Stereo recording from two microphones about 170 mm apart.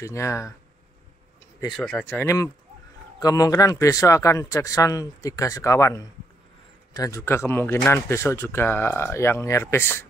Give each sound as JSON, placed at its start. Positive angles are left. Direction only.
{"t": 0.0, "sound": "speech", "side_deg": 15}
{"t": 1.7, "sound": "speech", "side_deg": 0}